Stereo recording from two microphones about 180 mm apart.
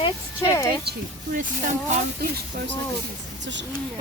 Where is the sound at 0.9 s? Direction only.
65° right (ahead or behind).